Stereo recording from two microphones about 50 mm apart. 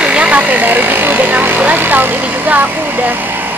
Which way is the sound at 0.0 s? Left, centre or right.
Right.